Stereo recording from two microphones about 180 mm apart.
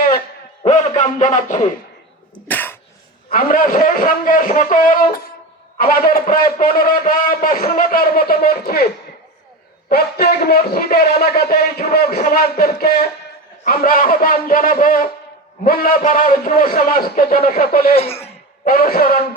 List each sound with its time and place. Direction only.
0.6 s a sound: 40° left (ahead or behind)
2.5 s cough: 10° left (ahead or behind)
3.2 s a man's voice: 50° left (ahead or behind)
9.9 s a man's voice: 60° left (ahead or behind)
17.9 s speech: 35° left (ahead or behind)
18.6 s a man's voice: 55° left (ahead or behind)